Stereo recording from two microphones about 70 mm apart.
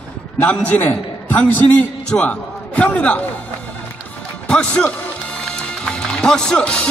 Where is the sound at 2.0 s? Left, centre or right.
Centre.